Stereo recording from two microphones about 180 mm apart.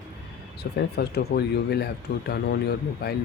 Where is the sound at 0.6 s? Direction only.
65° left (ahead or behind).